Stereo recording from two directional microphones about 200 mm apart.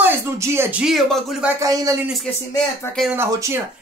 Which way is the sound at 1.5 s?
15° right (ahead or behind).